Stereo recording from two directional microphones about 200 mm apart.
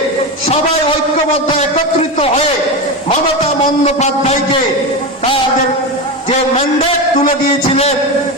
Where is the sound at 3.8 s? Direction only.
30° left (ahead or behind).